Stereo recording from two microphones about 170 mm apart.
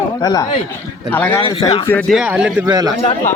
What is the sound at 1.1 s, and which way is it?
Speech, 10° left (ahead or behind).